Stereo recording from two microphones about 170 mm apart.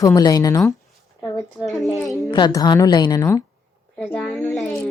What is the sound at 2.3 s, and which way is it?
A woman's voice, 25° left (ahead or behind).